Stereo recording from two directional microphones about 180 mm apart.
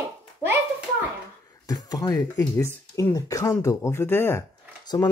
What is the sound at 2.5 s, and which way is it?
Speech, 15° left (ahead or behind).